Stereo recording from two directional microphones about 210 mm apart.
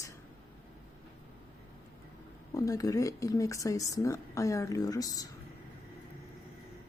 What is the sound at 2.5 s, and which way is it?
Speech, 15° left (ahead or behind).